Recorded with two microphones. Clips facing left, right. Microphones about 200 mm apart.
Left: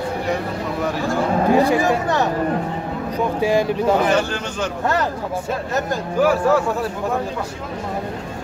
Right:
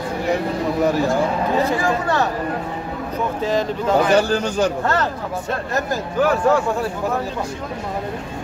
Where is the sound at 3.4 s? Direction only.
10° left (ahead or behind).